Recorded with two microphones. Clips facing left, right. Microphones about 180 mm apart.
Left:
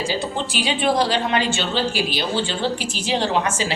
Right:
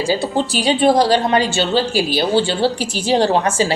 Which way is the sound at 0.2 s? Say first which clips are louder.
Right 6 dB; 40° right (ahead or behind).